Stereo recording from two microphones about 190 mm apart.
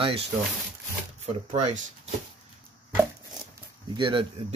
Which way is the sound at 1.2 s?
40° right (ahead or behind).